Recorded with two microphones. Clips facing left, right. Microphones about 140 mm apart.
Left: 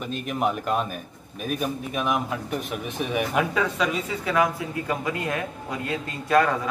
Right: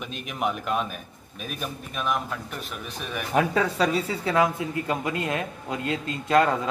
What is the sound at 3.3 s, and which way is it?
A man's voice, 35° right (ahead or behind).